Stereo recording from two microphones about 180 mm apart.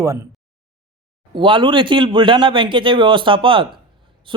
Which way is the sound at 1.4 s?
25° right (ahead or behind).